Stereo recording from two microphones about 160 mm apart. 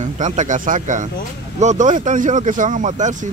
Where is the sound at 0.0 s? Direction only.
50° right (ahead or behind).